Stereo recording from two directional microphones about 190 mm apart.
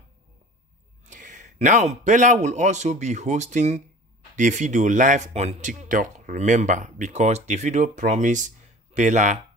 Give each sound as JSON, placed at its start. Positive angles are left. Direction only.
{"t": 1.0, "sound": "a man's voice", "side_deg": -40}